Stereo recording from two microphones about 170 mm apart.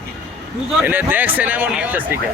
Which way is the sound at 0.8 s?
10° right (ahead or behind).